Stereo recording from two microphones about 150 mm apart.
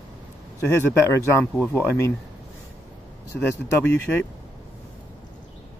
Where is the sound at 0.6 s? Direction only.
15° left (ahead or behind).